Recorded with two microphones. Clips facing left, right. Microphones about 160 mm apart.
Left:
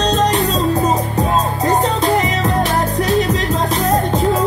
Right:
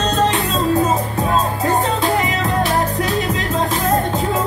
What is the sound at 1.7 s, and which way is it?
Music, 40° left (ahead or behind).